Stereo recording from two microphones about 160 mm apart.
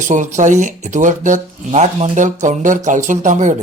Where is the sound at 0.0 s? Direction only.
50° right (ahead or behind).